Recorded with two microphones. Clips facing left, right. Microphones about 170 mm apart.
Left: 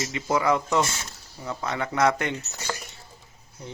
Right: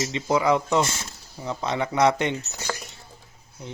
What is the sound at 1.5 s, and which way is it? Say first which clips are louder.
Speech: right 3 dB; 20° right (ahead or behind).